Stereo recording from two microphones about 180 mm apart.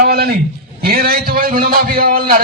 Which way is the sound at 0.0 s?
60° right (ahead or behind).